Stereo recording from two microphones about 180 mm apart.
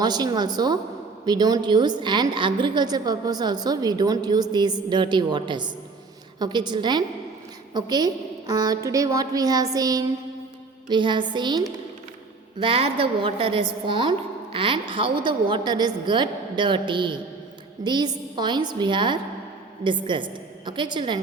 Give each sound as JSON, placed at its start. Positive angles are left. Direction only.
{"t": 0.0, "sound": "a woman's voice", "side_deg": -20}